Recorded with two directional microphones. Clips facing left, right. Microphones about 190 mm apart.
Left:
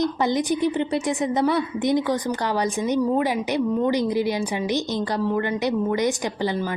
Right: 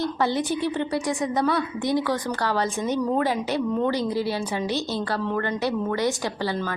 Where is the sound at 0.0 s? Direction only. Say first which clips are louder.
Left 2 dB; 15° left (ahead or behind).